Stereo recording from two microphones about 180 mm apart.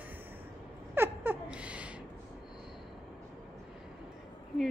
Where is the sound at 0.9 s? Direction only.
10° right (ahead or behind).